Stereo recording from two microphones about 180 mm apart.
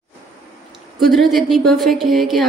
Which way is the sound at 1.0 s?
Centre (ahead or behind).